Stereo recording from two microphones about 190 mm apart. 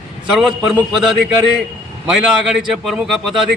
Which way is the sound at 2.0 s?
Centre (ahead or behind).